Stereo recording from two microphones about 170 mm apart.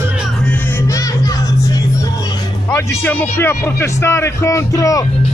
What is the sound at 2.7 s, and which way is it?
Speech, 10° left (ahead or behind).